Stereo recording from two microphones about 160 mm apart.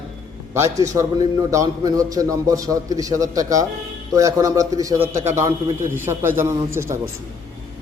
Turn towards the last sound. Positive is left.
turn(degrees=-15)  # may be behind; listen again after turning